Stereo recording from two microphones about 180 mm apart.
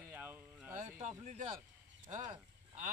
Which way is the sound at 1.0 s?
40° right (ahead or behind).